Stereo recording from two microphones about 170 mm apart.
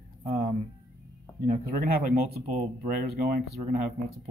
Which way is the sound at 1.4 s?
55° right (ahead or behind).